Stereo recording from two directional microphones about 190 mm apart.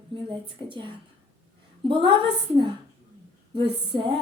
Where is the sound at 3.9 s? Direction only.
25° right (ahead or behind).